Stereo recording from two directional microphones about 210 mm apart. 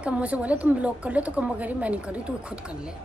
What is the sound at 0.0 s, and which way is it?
A woman's voice, 5° right (ahead or behind).